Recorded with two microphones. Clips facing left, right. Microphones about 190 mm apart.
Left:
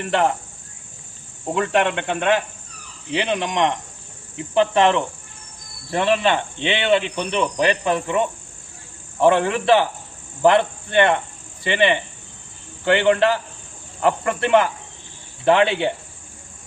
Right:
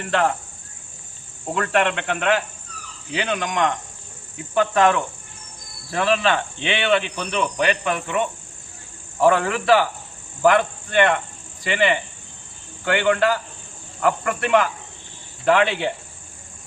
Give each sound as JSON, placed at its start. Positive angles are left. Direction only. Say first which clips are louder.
{"t": 0.0, "sound": "speech", "louder": "left 1 dB", "side_deg": 20}
{"t": 1.5, "sound": "speech", "louder": "left 1 dB", "side_deg": 15}
{"t": 9.2, "sound": "speech", "louder": "left 1 dB", "side_deg": 20}